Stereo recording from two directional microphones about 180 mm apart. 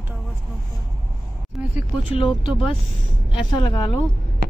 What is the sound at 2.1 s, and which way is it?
A woman's voice, 30° left (ahead or behind).